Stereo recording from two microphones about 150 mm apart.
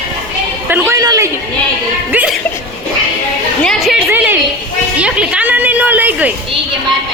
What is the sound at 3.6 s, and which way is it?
Chatter, centre (ahead or behind).